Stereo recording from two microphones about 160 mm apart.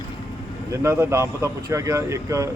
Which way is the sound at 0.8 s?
15° right (ahead or behind).